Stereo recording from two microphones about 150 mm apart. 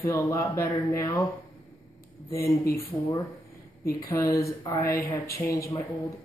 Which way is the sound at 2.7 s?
20° left (ahead or behind).